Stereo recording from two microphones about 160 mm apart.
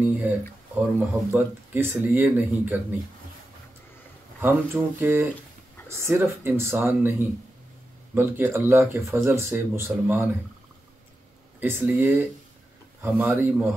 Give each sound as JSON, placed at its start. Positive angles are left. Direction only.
{"t": 0.7, "sound": "speech", "side_deg": -10}
{"t": 4.4, "sound": "speech", "side_deg": -15}
{"t": 11.6, "sound": "speech", "side_deg": -15}